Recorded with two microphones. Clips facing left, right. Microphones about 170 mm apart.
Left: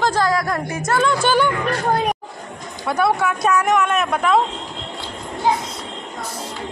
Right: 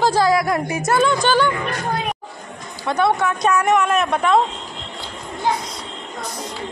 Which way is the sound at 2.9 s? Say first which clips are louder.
Even; 5° left (ahead or behind).